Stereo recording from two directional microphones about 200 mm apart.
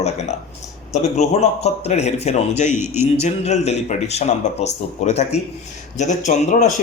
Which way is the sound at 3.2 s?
35° left (ahead or behind).